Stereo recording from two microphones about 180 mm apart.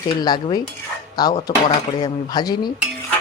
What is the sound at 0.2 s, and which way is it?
Speech, 20° left (ahead or behind).